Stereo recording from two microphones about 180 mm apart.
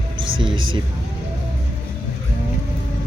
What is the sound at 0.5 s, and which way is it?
Speech, 90° right.